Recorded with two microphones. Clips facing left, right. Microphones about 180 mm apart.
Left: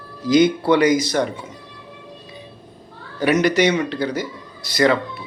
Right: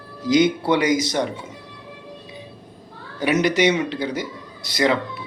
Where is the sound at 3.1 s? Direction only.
15° right (ahead or behind).